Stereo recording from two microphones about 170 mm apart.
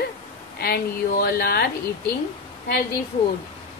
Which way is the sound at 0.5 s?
65° left (ahead or behind).